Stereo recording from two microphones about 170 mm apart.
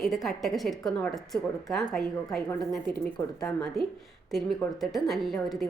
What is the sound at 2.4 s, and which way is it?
Speech, 20° left (ahead or behind).